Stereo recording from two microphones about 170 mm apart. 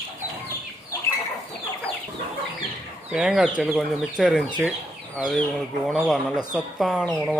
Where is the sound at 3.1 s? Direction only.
5° right (ahead or behind).